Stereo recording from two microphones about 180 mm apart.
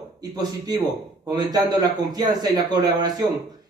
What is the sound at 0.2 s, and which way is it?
A man's voice, 20° right (ahead or behind).